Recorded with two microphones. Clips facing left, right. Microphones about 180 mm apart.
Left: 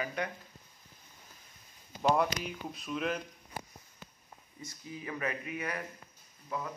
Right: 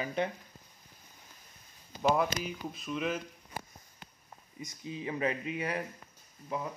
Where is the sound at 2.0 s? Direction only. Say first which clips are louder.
Even; centre (ahead or behind).